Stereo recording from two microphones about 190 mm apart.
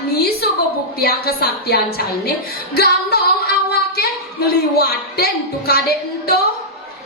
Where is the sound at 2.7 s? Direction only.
55° left (ahead or behind).